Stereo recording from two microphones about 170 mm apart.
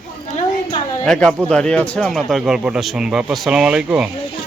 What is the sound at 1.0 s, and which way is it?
Speech, 5° left (ahead or behind).